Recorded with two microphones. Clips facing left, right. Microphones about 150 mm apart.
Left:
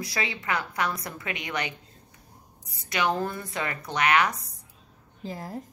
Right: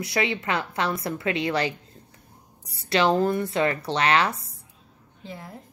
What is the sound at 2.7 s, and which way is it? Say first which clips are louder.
A woman's voice: right 6 dB; 30° right (ahead or behind).